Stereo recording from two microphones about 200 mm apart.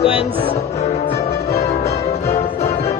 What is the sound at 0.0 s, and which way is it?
Music, 30° left (ahead or behind).